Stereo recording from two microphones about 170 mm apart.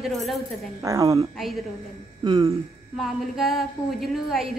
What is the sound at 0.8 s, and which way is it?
Speech, 20° right (ahead or behind).